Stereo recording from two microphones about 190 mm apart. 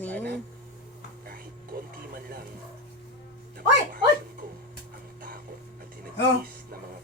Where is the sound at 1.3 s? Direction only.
50° right (ahead or behind).